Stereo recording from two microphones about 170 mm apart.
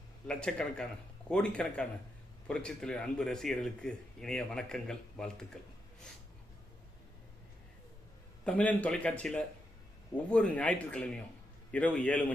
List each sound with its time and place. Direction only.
0.3 s speech: 5° left (ahead or behind)
8.4 s speech: 10° left (ahead or behind)